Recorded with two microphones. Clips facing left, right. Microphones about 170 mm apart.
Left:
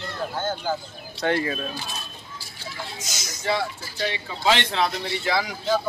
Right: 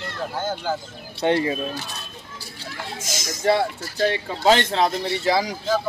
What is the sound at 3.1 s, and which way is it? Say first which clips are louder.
Speech: right 7 dB; 90° right.